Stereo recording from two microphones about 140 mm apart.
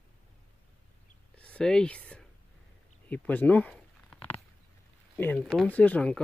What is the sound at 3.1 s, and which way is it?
Speech, 10° left (ahead or behind).